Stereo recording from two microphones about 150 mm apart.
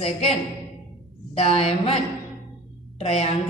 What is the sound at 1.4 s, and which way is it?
Speech, 40° left (ahead or behind).